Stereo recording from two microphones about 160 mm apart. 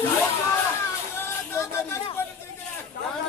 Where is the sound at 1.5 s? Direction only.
15° left (ahead or behind).